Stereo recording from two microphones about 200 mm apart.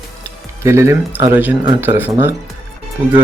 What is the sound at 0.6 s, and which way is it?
Speech, 15° right (ahead or behind).